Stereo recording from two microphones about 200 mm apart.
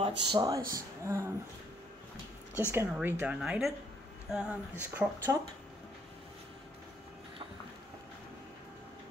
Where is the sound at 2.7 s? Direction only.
10° right (ahead or behind).